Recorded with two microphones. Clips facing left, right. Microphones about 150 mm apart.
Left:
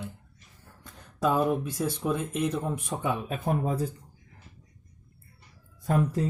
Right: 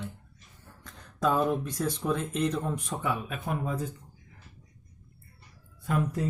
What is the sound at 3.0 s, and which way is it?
Speech, 25° left (ahead or behind).